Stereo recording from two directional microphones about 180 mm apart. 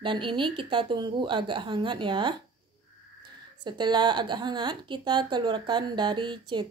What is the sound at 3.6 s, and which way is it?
A woman's voice, 25° right (ahead or behind).